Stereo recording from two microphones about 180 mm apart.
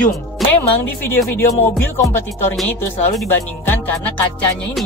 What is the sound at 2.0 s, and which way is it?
Speech, 15° left (ahead or behind).